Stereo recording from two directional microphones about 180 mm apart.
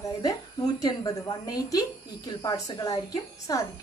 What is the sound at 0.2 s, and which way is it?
A woman's voice, 20° left (ahead or behind).